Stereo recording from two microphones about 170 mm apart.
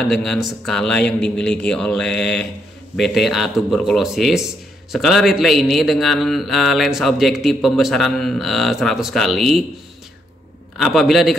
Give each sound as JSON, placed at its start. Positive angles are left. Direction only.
{"t": 0.1, "sound": "speech", "side_deg": 0}
{"t": 10.8, "sound": "speech", "side_deg": 0}